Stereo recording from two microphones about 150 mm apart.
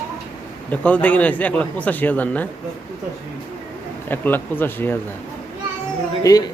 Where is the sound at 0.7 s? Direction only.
10° left (ahead or behind).